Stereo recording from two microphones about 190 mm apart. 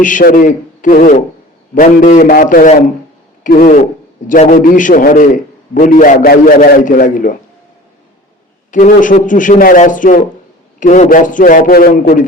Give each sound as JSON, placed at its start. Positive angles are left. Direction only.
{"t": 0.0, "sound": "a man's voice", "side_deg": 45}
{"t": 8.7, "sound": "a man's voice", "side_deg": 45}